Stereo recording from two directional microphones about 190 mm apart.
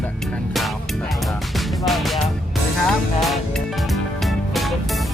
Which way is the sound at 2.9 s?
Centre (ahead or behind).